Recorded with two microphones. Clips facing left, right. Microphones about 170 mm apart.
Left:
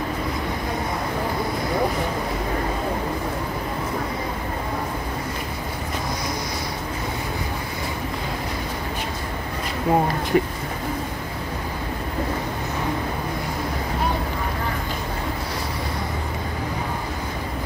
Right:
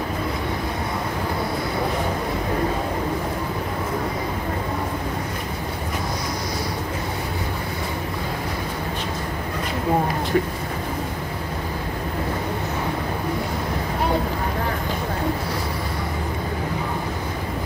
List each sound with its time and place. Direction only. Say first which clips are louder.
10.3 s speech: left 2 dB; 15° left (ahead or behind)